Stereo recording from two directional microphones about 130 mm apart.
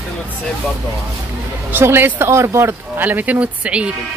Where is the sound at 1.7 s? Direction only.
15° right (ahead or behind).